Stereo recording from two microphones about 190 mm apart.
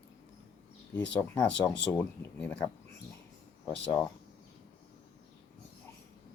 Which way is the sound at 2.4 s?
5° left (ahead or behind).